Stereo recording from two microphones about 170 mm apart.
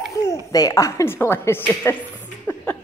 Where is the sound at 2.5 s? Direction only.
10° left (ahead or behind).